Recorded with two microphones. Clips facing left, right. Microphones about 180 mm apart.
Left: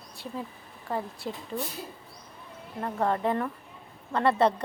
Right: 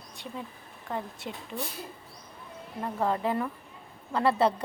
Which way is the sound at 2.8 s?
5° right (ahead or behind).